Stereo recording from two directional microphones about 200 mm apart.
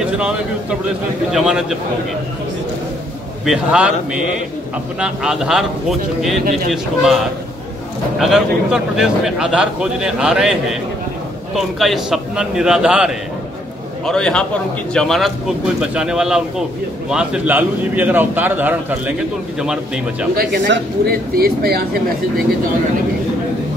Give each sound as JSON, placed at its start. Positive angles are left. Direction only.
{"t": 0.0, "sound": "a man's voice", "side_deg": -5}
{"t": 3.4, "sound": "a man's voice", "side_deg": -5}
{"t": 8.2, "sound": "a man's voice", "side_deg": 0}
{"t": 20.3, "sound": "speech", "side_deg": -60}